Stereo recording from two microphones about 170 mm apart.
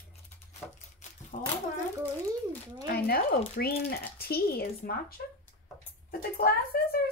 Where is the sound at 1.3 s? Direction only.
50° left (ahead or behind).